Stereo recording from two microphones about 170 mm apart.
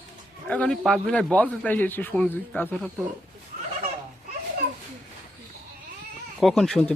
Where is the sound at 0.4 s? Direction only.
5° left (ahead or behind).